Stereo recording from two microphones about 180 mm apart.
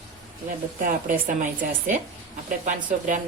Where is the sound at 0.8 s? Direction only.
50° right (ahead or behind).